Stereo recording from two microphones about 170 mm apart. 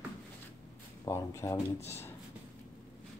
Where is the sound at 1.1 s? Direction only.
15° left (ahead or behind).